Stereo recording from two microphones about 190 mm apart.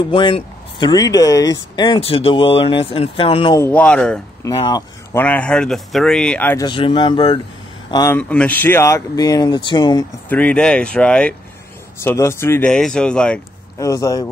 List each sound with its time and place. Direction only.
0.1 s speech: 25° left (ahead or behind)
3.5 s speech: 10° left (ahead or behind)
4.5 s speech: 20° left (ahead or behind)
5.1 s speech: 10° left (ahead or behind)
6.6 s speech: 25° left (ahead or behind)
8.2 s speech: 5° left (ahead or behind); by 10.0 s 25° left (ahead or behind)
10.3 s speech: 5° left (ahead or behind)
13.7 s speech: 15° left (ahead or behind)